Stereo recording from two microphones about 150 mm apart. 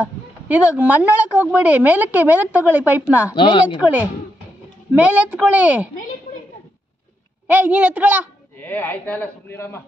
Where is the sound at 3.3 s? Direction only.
35° left (ahead or behind).